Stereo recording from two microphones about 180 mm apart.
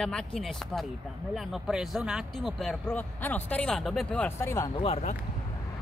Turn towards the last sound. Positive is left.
turn(degrees=35)  # may be behind; listen again after turning